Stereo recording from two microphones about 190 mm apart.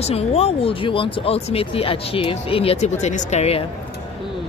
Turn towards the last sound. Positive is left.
turn(degrees=35)  # may be behind; listen again after turning